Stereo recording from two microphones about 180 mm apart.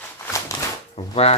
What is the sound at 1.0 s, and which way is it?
Speech, 35° left (ahead or behind).